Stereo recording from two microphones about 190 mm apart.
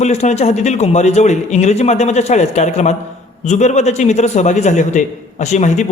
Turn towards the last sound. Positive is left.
turn(degrees=40)  # may be behind; listen again after turning